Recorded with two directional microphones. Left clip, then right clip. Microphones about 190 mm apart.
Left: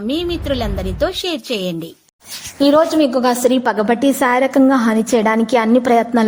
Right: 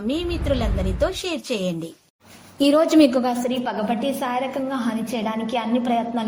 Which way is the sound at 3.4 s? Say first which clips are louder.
Left 10 dB; 45° left (ahead or behind).